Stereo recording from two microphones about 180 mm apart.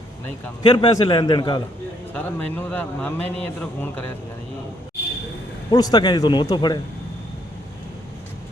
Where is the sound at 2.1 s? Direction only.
10° left (ahead or behind).